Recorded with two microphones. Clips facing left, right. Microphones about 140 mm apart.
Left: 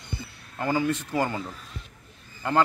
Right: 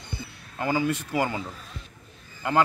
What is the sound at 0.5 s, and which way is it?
Speech, 15° right (ahead or behind).